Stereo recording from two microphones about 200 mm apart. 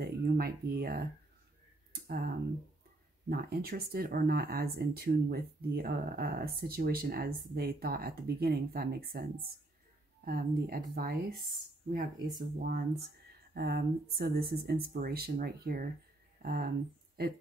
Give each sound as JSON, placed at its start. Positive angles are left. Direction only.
{"t": 0.0, "sound": "speech", "side_deg": -50}
{"t": 12.4, "sound": "speech", "side_deg": -50}